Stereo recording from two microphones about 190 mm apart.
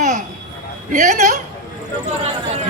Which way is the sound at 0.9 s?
40° right (ahead or behind).